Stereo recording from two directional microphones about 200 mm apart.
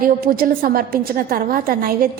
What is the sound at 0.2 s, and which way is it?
A woman's voice, 45° right (ahead or behind).